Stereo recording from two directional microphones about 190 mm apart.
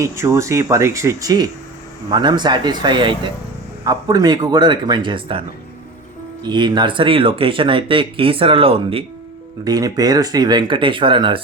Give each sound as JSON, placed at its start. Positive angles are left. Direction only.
{"t": 0.0, "sound": "speech", "side_deg": -15}
{"t": 6.4, "sound": "speech", "side_deg": -25}
{"t": 9.6, "sound": "speech", "side_deg": -20}